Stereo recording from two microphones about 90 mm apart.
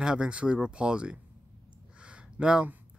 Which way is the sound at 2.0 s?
10° right (ahead or behind).